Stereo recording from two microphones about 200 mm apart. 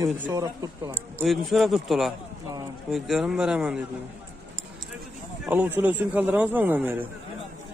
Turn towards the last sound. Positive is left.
turn(degrees=-10)  # may be behind; listen again after turning